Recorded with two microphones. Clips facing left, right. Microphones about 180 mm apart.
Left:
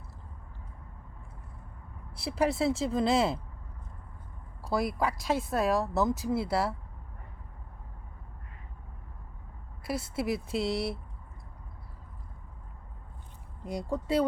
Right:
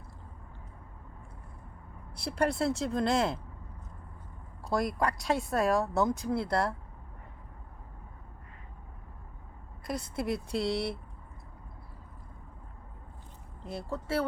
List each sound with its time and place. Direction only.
2.1 s speech: centre (ahead or behind)
4.6 s speech: 5° left (ahead or behind)
9.8 s speech: 5° left (ahead or behind)
13.7 s speech: 15° left (ahead or behind)